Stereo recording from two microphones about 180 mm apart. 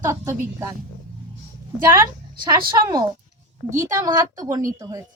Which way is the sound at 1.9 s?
20° right (ahead or behind).